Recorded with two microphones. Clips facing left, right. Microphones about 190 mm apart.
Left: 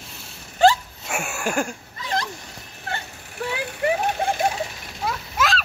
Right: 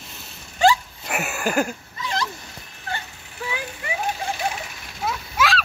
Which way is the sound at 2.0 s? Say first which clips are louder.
Left 1 dB; 55° left (ahead or behind).